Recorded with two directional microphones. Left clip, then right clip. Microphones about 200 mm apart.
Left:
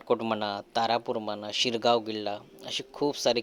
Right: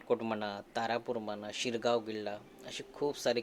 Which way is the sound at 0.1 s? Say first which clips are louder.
Left 6 dB; 35° left (ahead or behind).